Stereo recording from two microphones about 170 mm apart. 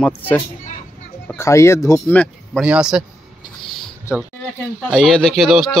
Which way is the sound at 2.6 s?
5° right (ahead or behind).